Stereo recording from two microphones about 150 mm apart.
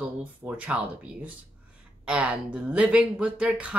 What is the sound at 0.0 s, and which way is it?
Speech, 10° right (ahead or behind).